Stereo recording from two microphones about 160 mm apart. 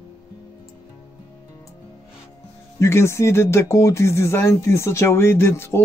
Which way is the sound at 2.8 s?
15° left (ahead or behind).